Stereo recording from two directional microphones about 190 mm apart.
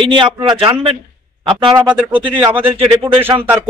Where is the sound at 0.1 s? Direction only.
25° right (ahead or behind).